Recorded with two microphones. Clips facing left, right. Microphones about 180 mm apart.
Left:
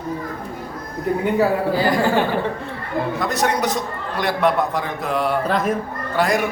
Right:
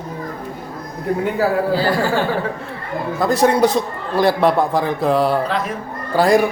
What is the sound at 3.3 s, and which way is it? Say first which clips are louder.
A man's voice: right 10 dB; 30° right (ahead or behind).